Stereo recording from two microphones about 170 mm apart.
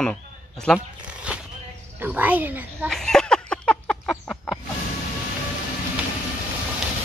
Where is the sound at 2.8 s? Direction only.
5° left (ahead or behind).